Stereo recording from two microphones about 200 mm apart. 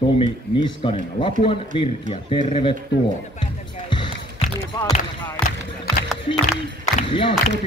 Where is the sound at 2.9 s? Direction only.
65° left (ahead or behind).